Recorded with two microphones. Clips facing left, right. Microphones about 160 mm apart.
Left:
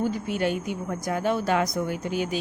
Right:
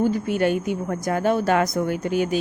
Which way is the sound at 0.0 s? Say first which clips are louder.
Right 5 dB; 50° right (ahead or behind).